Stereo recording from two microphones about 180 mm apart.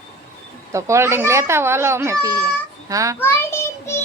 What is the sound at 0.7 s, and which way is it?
Speech, 15° right (ahead or behind).